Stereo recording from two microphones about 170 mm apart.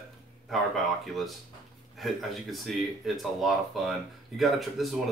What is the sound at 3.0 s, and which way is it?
Speech, centre (ahead or behind).